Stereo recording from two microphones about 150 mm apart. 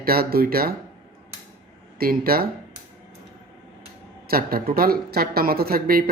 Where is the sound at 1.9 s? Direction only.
85° right.